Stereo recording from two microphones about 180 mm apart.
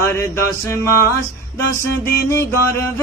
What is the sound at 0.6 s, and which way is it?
Music, 15° left (ahead or behind).